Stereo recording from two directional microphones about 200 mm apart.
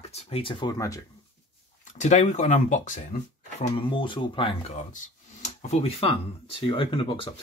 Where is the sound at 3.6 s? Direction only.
25° left (ahead or behind).